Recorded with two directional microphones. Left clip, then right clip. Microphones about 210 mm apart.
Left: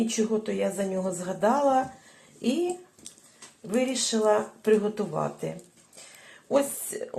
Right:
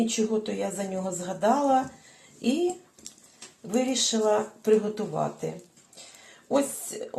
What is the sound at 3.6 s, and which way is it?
Speech, 20° left (ahead or behind).